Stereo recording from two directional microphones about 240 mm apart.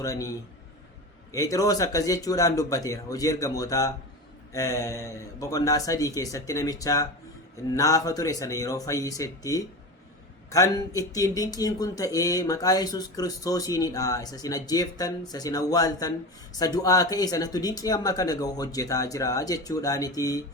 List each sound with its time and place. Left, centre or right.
0.0 s speech: centre